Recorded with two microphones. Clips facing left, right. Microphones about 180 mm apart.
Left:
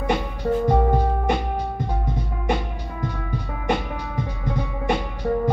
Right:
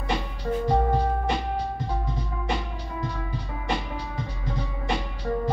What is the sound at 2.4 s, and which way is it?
Music, 55° left (ahead or behind).